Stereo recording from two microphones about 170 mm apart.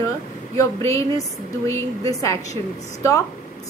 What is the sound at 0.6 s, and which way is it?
A woman's voice, 15° left (ahead or behind).